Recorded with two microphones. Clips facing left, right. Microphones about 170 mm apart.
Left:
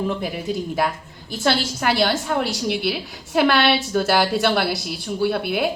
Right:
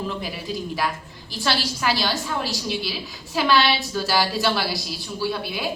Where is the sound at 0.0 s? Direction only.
55° left (ahead or behind).